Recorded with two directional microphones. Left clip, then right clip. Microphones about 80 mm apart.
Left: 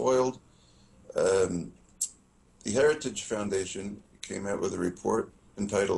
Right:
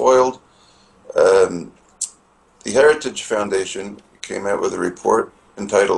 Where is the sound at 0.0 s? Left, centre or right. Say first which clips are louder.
Right 12 dB; centre.